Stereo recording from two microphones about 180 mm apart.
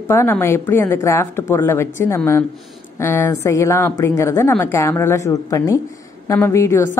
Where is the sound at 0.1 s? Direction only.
15° left (ahead or behind).